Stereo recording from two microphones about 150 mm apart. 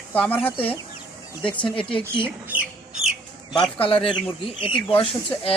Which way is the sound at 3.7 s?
35° left (ahead or behind).